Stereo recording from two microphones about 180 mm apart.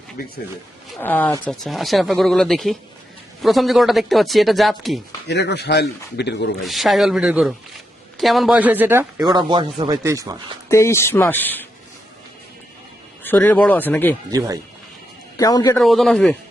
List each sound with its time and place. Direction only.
0.9 s speech: 10° left (ahead or behind)
5.3 s speech: 70° left (ahead or behind)
6.7 s speech: centre (ahead or behind)
9.2 s speech: 25° right (ahead or behind)
10.7 s speech: 15° left (ahead or behind)
13.2 s speech: 10° left (ahead or behind)
14.3 s speech: 20° right (ahead or behind)
15.4 s a man's voice: 20° left (ahead or behind)
15.8 s speech: centre (ahead or behind)